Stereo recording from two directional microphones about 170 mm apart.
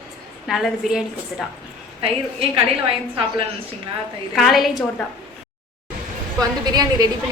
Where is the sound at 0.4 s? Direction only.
Centre (ahead or behind).